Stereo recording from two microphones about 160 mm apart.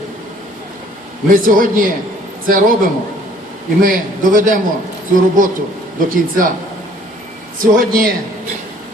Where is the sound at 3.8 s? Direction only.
60° right (ahead or behind).